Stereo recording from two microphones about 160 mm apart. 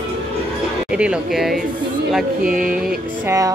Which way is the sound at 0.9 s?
5° right (ahead or behind).